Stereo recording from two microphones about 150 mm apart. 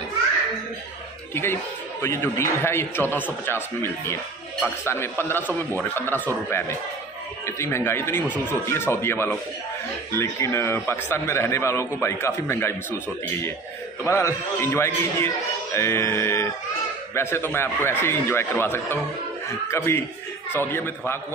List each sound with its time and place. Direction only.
1.3 s a man's voice: 15° left (ahead or behind)
14.0 s a man's voice: 20° left (ahead or behind)